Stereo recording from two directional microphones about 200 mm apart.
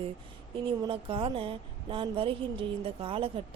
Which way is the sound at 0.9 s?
25° right (ahead or behind).